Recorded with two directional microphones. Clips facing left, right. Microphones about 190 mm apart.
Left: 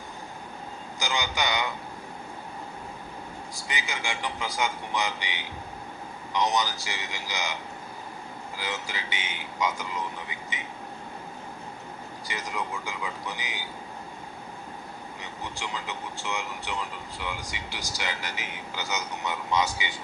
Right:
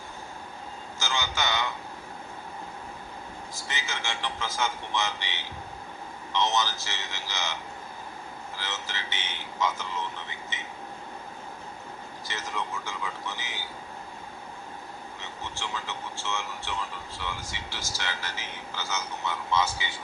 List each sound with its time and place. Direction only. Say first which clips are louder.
0.9 s a man's voice: left 2 dB; 15° left (ahead or behind)
3.5 s a man's voice: left 2 dB; 15° left (ahead or behind)
8.5 s a man's voice: left 3 dB; 10° left (ahead or behind)
12.3 s a man's voice: left 1 dB; 10° left (ahead or behind)
15.2 s a man's voice: left 1 dB; 15° left (ahead or behind)